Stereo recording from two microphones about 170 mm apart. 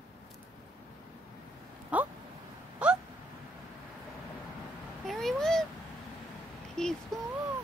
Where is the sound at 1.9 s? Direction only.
10° right (ahead or behind).